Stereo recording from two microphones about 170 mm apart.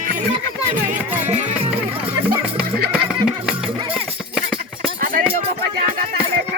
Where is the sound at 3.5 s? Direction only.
5° right (ahead or behind).